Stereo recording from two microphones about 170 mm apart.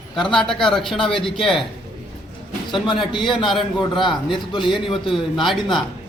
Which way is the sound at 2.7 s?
30° left (ahead or behind).